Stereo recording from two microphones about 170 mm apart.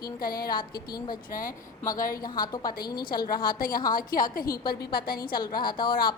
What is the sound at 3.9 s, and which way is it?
A woman's voice, 55° left (ahead or behind).